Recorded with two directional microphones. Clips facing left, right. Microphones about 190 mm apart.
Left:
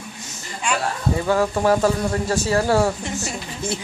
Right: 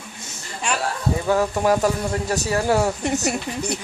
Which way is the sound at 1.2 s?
10° right (ahead or behind).